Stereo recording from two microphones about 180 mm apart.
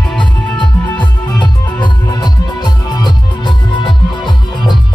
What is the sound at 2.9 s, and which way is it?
Music, 25° left (ahead or behind).